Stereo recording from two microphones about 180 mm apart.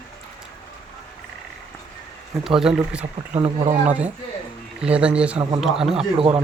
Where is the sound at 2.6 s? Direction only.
5° right (ahead or behind).